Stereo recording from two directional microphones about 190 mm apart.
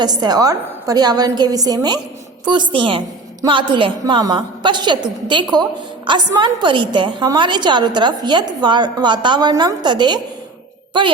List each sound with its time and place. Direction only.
0.0 s a woman's voice: 20° right (ahead or behind)